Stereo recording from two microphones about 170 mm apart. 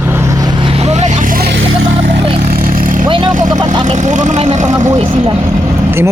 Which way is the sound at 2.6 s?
55° right (ahead or behind).